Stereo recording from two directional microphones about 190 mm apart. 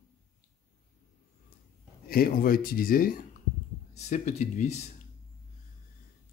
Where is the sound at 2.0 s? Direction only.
50° left (ahead or behind).